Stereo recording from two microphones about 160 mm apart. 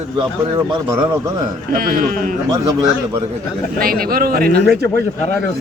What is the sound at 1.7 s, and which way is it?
Speech, 65° right (ahead or behind).